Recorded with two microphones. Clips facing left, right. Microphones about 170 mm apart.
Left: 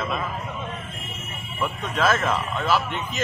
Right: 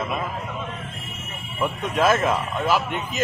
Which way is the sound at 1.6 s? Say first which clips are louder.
Right 3 dB; 15° right (ahead or behind).